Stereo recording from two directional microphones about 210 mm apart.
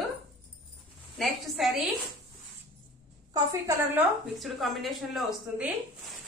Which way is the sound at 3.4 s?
15° right (ahead or behind).